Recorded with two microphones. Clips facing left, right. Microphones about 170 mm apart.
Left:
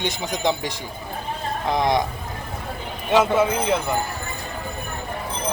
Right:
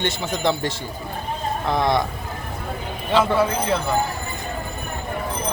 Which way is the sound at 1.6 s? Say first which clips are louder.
Even; 15° left (ahead or behind).